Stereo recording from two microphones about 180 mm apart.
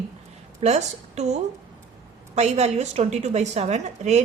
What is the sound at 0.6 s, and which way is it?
A woman's voice, 40° right (ahead or behind).